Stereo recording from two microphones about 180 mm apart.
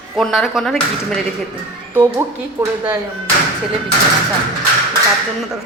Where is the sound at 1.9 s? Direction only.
10° right (ahead or behind).